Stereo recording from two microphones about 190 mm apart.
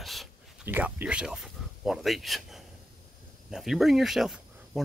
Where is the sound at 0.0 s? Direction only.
Centre (ahead or behind).